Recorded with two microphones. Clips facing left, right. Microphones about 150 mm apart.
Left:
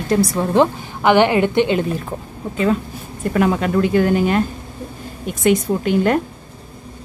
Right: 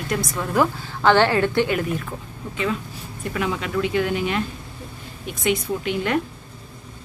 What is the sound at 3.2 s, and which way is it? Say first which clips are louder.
A woman's voice: left 8 dB; 50° left (ahead or behind).